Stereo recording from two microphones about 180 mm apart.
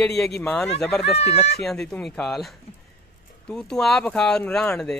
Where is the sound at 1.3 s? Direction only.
65° left (ahead or behind).